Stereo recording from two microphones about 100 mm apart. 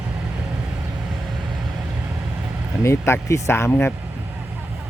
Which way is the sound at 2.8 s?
30° left (ahead or behind).